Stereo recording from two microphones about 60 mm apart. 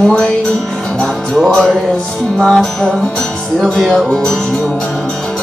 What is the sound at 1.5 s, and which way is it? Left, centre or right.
Music, centre.